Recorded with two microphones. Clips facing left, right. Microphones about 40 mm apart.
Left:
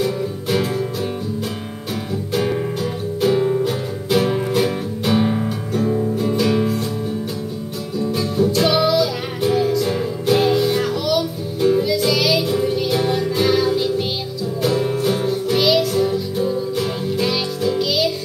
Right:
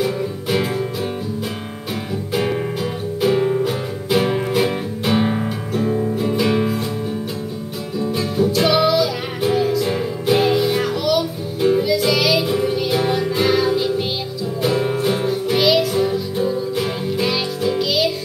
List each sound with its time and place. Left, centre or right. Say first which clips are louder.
0.0 s music: even; centre
2.3 s music: even; centre
8.0 s music: even; centre